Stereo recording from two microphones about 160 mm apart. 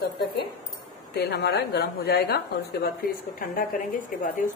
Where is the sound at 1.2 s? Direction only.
90° left.